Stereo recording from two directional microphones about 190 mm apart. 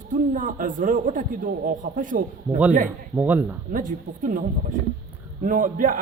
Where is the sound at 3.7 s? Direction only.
45° right (ahead or behind).